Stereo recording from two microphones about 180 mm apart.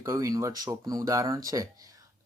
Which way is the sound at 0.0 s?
15° right (ahead or behind).